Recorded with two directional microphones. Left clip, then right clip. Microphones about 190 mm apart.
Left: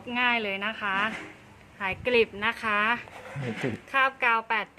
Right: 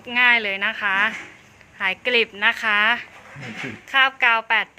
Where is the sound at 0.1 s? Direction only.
5° right (ahead or behind).